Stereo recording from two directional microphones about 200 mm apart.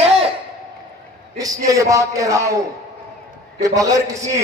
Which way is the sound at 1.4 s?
15° right (ahead or behind).